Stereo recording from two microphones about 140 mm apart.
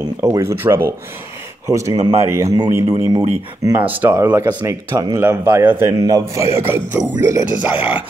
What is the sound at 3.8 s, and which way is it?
Speech, 10° right (ahead or behind).